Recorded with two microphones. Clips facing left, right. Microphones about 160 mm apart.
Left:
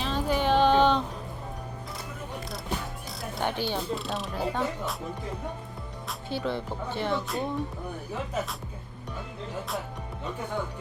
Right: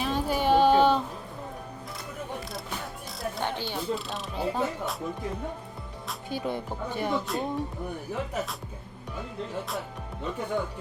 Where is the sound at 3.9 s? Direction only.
Centre (ahead or behind).